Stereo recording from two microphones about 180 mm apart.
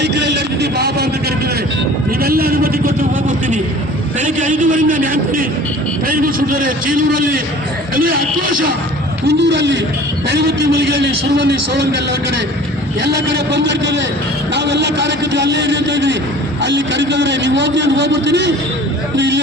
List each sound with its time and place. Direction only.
0.0 s a man's voice: 70° right (ahead or behind)
2.2 s vehicle: 55° right (ahead or behind)
4.2 s a man's voice: 45° right (ahead or behind)
9.2 s a man's voice: 75° right (ahead or behind)
10.2 s a man's voice: 65° right (ahead or behind)
13.1 s a man's voice: 70° right (ahead or behind)